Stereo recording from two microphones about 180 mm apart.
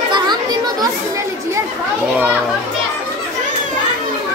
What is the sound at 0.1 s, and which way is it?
Children playing, 25° right (ahead or behind).